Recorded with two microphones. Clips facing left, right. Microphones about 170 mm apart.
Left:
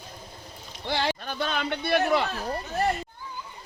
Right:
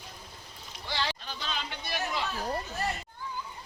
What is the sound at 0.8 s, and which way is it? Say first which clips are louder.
Speech: left 7 dB; 55° left (ahead or behind).